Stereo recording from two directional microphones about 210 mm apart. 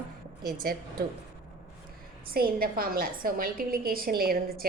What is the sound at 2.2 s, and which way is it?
A woman's voice, 45° right (ahead or behind).